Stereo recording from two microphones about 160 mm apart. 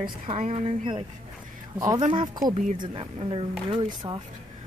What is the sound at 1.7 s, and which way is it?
Speech, 20° right (ahead or behind).